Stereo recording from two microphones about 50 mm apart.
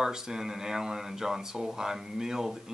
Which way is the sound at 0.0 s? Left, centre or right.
Centre.